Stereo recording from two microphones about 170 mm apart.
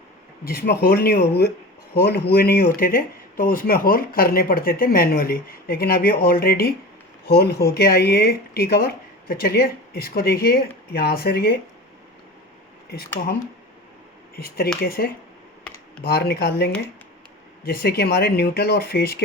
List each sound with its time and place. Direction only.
0.4 s speech: 60° left (ahead or behind)
12.9 s speech: 65° left (ahead or behind)
14.3 s speech: 65° left (ahead or behind)